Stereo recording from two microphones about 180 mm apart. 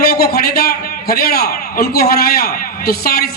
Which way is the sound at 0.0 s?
60° left (ahead or behind).